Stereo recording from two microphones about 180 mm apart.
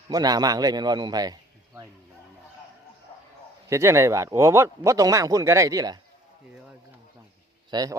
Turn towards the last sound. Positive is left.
turn(degrees=-20)  # may be behind; listen again after turning